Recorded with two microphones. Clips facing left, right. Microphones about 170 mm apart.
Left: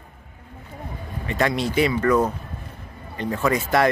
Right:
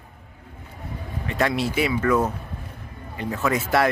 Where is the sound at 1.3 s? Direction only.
Centre (ahead or behind).